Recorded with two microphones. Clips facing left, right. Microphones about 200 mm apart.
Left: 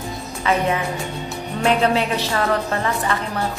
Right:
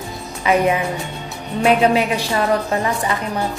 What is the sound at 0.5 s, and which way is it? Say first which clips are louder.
A woman's voice: right 4 dB; 15° right (ahead or behind).